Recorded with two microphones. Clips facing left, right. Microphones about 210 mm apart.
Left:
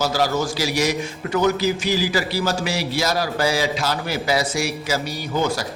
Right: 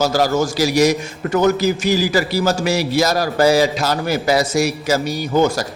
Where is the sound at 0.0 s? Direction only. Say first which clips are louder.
Right 5 dB; 45° right (ahead or behind).